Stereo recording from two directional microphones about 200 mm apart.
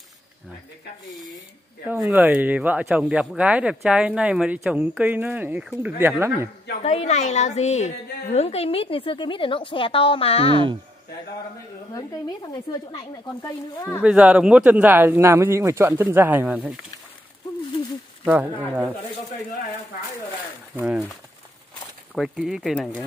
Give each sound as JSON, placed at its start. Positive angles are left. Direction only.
{"t": 1.9, "sound": "speech", "side_deg": -10}
{"t": 6.8, "sound": "a woman's voice", "side_deg": 35}
{"t": 11.9, "sound": "a woman's voice", "side_deg": 20}
{"t": 14.0, "sound": "speech", "side_deg": -5}
{"t": 18.2, "sound": "speech", "side_deg": -10}
{"t": 20.7, "sound": "speech", "side_deg": -5}
{"t": 22.1, "sound": "speech", "side_deg": -5}